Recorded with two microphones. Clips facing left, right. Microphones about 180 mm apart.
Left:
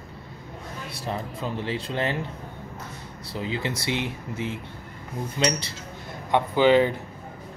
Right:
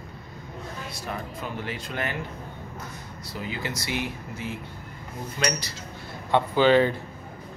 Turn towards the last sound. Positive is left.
turn(degrees=15)  # may be behind; listen again after turning